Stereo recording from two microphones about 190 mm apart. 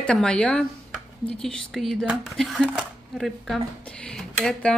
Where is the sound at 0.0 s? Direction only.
5° left (ahead or behind).